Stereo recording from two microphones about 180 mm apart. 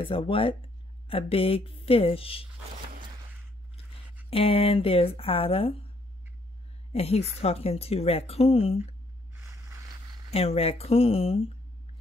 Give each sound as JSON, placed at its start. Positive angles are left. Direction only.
{"t": 0.0, "sound": "a woman's voice", "side_deg": 30}
{"t": 4.3, "sound": "a woman's voice", "side_deg": 30}
{"t": 6.9, "sound": "a woman's voice", "side_deg": 35}
{"t": 9.3, "sound": "a sound", "side_deg": -15}
{"t": 10.3, "sound": "a woman's voice", "side_deg": 35}